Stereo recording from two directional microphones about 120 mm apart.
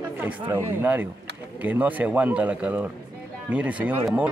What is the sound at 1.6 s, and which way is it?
Speech, 15° right (ahead or behind).